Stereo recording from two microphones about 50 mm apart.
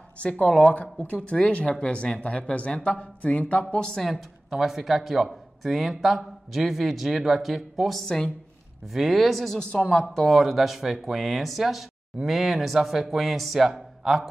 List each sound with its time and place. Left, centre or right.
0.2 s speech: centre
3.9 s speech: centre
4.6 s speech: centre
9.6 s speech: left
10.1 s speech: centre